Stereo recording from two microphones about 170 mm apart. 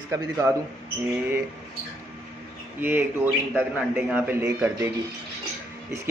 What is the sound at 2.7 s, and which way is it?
A man's voice, 10° right (ahead or behind).